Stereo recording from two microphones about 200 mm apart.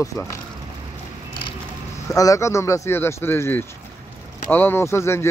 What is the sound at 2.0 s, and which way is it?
Speech, 15° left (ahead or behind).